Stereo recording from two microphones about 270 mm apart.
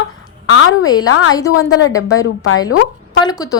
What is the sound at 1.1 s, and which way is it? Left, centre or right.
Speech, left.